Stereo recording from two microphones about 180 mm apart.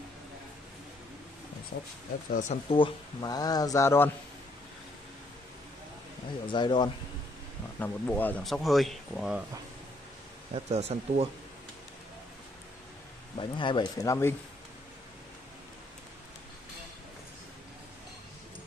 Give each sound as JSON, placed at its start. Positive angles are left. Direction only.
{"t": 1.7, "sound": "speech", "side_deg": 65}
{"t": 2.3, "sound": "speech", "side_deg": 35}
{"t": 6.4, "sound": "speech", "side_deg": 25}
{"t": 7.8, "sound": "speech", "side_deg": 10}
{"t": 10.5, "sound": "speech", "side_deg": -35}
{"t": 13.4, "sound": "speech", "side_deg": 25}